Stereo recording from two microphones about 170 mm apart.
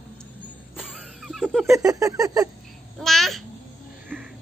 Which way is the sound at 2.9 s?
Centre (ahead or behind).